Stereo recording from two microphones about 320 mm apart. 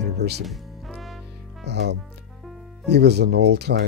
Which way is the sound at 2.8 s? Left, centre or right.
Right.